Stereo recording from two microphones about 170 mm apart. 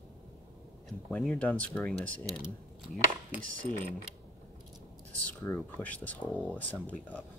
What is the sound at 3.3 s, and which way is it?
Speech, 10° right (ahead or behind).